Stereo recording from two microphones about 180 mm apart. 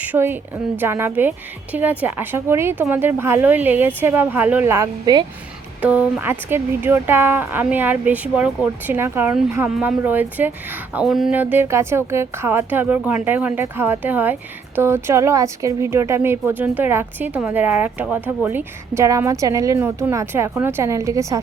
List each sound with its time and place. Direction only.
0.0 s speech: 10° right (ahead or behind)
5.8 s speech: 5° right (ahead or behind)